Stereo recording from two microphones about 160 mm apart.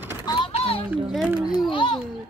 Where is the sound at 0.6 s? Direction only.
35° left (ahead or behind).